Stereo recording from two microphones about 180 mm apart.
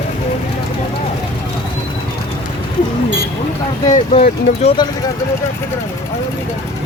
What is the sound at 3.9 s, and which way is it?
Speech, 35° left (ahead or behind).